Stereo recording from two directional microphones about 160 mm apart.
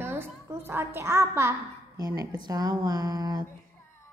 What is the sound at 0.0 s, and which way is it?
A woman's voice, 15° right (ahead or behind).